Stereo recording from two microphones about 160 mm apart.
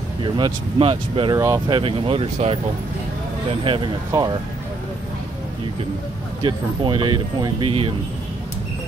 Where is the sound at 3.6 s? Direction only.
35° right (ahead or behind).